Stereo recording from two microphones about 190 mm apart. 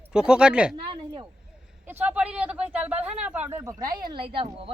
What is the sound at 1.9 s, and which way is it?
Speech, 10° right (ahead or behind).